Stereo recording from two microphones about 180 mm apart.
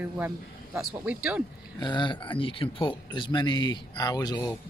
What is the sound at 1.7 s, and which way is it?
Speech, 25° left (ahead or behind).